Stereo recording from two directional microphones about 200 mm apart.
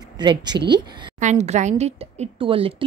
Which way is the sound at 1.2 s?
35° right (ahead or behind).